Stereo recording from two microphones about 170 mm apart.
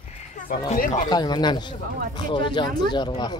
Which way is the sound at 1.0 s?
25° left (ahead or behind).